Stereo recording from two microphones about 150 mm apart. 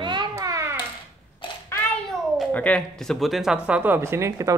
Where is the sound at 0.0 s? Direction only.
30° right (ahead or behind).